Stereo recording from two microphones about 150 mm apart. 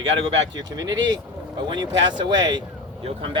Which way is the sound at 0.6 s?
25° right (ahead or behind).